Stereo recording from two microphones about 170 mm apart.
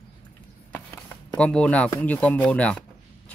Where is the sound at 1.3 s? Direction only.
5° left (ahead or behind).